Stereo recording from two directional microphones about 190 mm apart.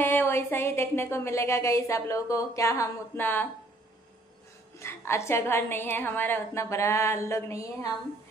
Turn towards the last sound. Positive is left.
turn(degrees=15)  # may be behind; listen again after turning